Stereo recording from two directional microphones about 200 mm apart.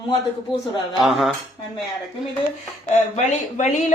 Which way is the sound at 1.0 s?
Centre (ahead or behind).